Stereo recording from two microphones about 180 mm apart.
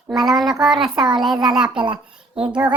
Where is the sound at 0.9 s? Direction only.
25° right (ahead or behind).